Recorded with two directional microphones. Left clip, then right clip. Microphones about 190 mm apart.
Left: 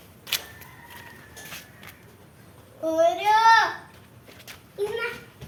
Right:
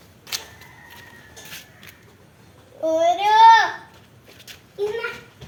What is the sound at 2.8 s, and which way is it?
Child singing, 25° left (ahead or behind).